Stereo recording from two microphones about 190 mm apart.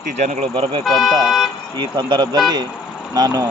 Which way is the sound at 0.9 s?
Centre (ahead or behind).